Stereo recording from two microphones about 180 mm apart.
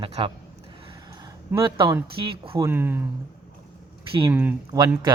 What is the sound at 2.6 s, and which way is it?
Speech, 10° right (ahead or behind).